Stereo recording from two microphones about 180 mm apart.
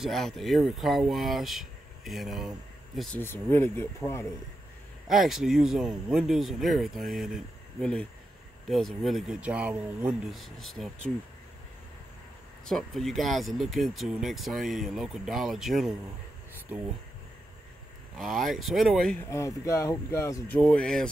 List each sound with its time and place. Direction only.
0.0 s speech: centre (ahead or behind)
3.2 s speech: 10° left (ahead or behind)
5.0 s speech: centre (ahead or behind)
12.6 s speech: centre (ahead or behind)
18.1 s speech: centre (ahead or behind)
19.3 s speech: 20° left (ahead or behind)